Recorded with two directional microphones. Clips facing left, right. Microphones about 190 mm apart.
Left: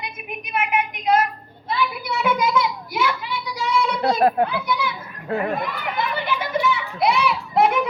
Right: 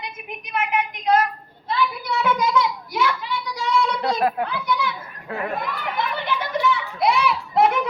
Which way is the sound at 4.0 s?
30° left (ahead or behind).